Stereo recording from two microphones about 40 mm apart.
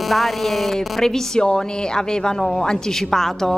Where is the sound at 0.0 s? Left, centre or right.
Centre.